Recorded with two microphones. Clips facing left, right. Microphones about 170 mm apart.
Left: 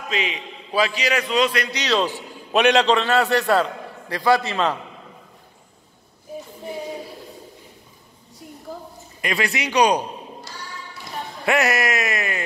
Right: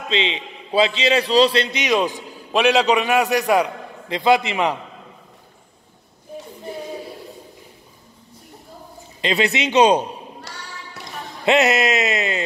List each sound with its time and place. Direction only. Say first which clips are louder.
0.1 s a man's voice: right 4 dB; 25° right (ahead or behind)
2.5 s a man's voice: even; 5° right (ahead or behind)
9.2 s a man's voice: right 4 dB; 25° right (ahead or behind)
10.5 s speech: right 1 dB; 65° right (ahead or behind)
11.4 s a man's voice: right 4 dB; 20° right (ahead or behind)